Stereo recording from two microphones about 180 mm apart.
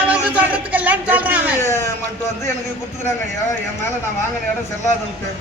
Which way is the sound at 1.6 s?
15° left (ahead or behind).